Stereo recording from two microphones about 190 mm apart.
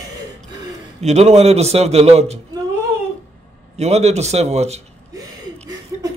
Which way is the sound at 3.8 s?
35° right (ahead or behind).